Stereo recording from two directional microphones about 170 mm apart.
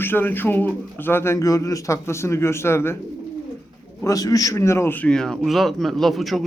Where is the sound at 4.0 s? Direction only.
20° left (ahead or behind).